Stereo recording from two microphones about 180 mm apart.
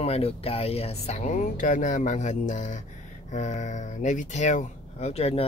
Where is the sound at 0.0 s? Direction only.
35° left (ahead or behind).